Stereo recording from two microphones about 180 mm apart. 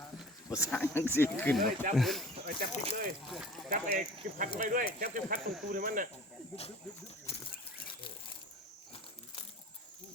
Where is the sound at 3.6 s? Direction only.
40° right (ahead or behind).